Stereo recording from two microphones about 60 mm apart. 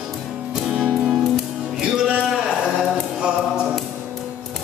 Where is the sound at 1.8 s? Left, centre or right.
Centre.